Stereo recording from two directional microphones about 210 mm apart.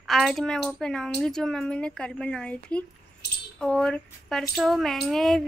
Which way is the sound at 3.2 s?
55° left (ahead or behind).